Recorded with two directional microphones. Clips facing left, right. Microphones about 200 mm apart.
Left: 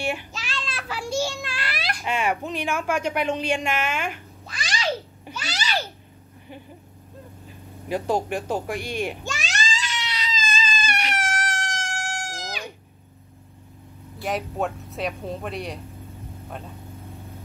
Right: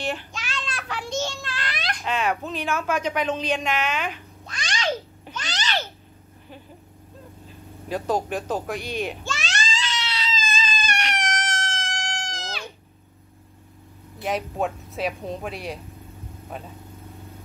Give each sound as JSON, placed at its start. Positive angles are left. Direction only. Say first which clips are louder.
{"t": 0.0, "sound": "a child's voice", "louder": "left 1 dB", "side_deg": 10}
{"t": 0.4, "sound": "a sound", "louder": "even", "side_deg": 0}
{"t": 7.9, "sound": "speech", "louder": "left 1 dB", "side_deg": 10}
{"t": 8.7, "sound": "speech", "louder": "even", "side_deg": 50}
{"t": 9.0, "sound": "baby cry", "louder": "even", "side_deg": 15}
{"t": 14.2, "sound": "speech", "louder": "right 1 dB", "side_deg": 0}